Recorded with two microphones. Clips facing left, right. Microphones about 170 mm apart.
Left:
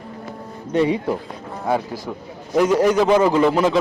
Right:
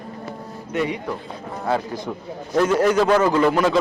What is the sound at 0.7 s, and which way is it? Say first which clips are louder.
Speech: left 6 dB; 30° left (ahead or behind).